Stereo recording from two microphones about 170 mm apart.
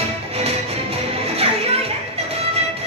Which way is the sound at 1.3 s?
35° right (ahead or behind).